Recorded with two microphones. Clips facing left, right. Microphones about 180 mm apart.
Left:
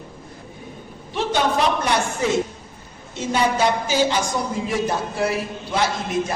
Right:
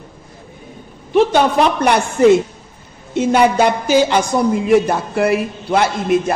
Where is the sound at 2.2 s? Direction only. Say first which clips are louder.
Right 11 dB; 60° right (ahead or behind).